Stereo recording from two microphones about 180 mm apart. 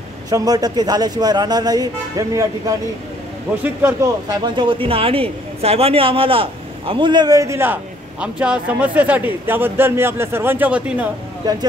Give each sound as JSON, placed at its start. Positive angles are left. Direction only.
{"t": 0.3, "sound": "a man's voice", "side_deg": -20}
{"t": 11.4, "sound": "speech", "side_deg": -20}